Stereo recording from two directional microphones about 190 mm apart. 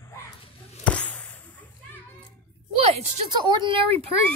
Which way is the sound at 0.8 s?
5° left (ahead or behind).